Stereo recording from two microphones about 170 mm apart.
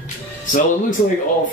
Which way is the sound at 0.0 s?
50° left (ahead or behind).